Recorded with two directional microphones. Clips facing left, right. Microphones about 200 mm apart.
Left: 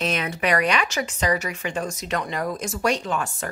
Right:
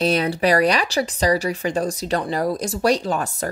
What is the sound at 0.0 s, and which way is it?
Speech, 35° right (ahead or behind).